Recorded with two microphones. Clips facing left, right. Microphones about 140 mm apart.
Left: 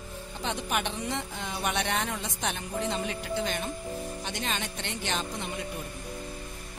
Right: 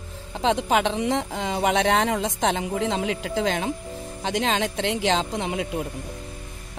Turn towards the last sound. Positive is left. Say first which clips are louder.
# right 8 dB
turn(degrees=-90)